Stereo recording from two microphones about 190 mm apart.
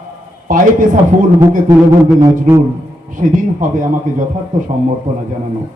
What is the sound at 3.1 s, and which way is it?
A man's voice, 45° right (ahead or behind).